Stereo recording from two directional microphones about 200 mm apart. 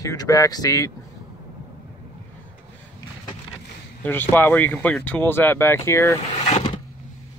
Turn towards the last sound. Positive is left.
turn(degrees=30)  # may be behind; listen again after turning